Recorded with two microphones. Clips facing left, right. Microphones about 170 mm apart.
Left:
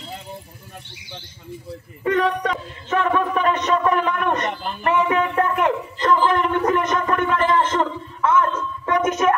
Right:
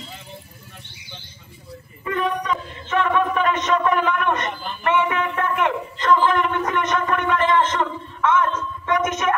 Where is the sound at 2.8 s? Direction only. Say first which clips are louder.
Even; 40° left (ahead or behind).